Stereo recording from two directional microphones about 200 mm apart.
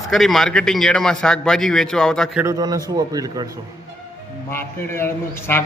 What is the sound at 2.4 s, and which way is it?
A man's voice, 15° right (ahead or behind).